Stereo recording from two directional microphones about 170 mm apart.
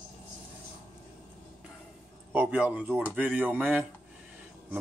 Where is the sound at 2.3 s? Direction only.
10° right (ahead or behind).